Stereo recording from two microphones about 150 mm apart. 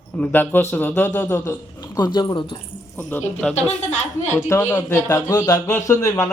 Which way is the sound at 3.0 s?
10° left (ahead or behind).